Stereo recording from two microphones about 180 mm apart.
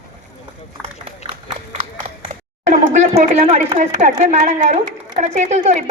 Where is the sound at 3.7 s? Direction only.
40° right (ahead or behind).